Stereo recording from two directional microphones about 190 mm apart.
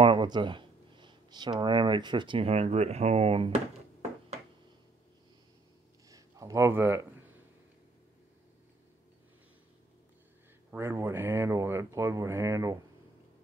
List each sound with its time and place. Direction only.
0.0 s speech: 25° right (ahead or behind)
6.0 s a sound: 20° right (ahead or behind)
10.7 s speech: 10° right (ahead or behind)